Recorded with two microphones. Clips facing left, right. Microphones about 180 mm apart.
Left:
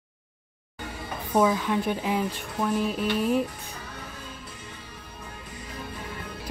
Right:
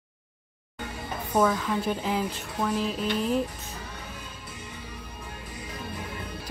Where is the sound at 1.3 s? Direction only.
5° left (ahead or behind).